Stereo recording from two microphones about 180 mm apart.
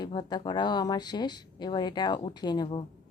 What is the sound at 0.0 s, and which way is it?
A woman's voice, 25° left (ahead or behind).